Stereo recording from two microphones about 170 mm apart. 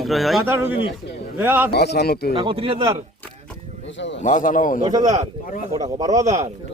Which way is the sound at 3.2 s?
5° left (ahead or behind).